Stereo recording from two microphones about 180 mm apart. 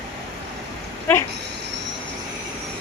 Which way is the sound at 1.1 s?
10° left (ahead or behind).